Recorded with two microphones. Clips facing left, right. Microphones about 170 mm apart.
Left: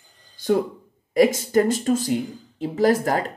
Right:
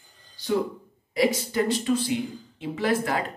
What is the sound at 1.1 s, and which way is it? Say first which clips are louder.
Speech: left 6 dB; 45° left (ahead or behind).